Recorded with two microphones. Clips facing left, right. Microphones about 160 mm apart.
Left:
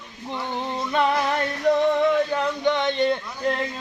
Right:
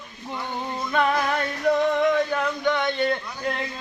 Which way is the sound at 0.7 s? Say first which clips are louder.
Even; 10° left (ahead or behind).